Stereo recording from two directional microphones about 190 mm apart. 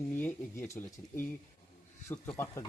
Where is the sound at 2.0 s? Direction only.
10° left (ahead or behind).